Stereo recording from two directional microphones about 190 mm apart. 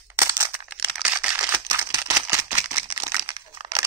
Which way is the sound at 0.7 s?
5° right (ahead or behind).